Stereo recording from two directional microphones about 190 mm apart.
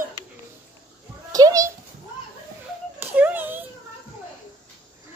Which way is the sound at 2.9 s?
10° right (ahead or behind).